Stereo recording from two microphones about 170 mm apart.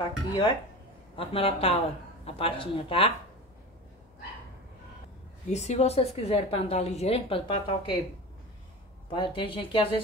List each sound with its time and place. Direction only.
0.3 s speech: 25° left (ahead or behind)
1.1 s a woman's voice: 35° left (ahead or behind)
5.5 s a woman's voice: 40° left (ahead or behind)
9.1 s a woman's voice: 30° left (ahead or behind)